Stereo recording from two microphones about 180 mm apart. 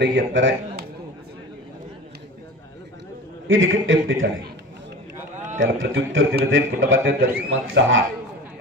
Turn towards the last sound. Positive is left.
turn(degrees=-90)